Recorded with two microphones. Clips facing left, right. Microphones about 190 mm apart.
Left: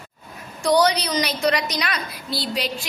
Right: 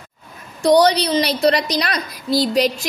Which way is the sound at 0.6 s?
35° right (ahead or behind).